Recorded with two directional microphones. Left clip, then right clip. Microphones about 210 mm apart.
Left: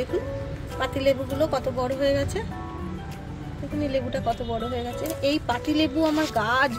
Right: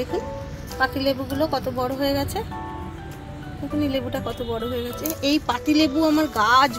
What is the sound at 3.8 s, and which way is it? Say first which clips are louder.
Speech: even; 35° right (ahead or behind).